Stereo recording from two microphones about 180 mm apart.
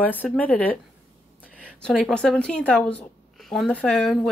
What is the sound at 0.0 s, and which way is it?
Speech, 10° left (ahead or behind).